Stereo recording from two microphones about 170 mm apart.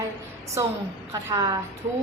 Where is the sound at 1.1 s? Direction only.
20° right (ahead or behind).